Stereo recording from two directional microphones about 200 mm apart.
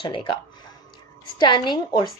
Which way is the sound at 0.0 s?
25° left (ahead or behind).